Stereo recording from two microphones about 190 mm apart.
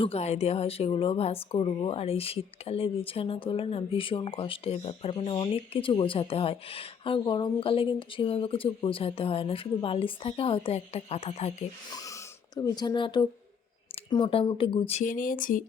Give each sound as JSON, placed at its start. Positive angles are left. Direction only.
{"t": 0.0, "sound": "speech", "side_deg": 35}
{"t": 11.9, "sound": "speech", "side_deg": 20}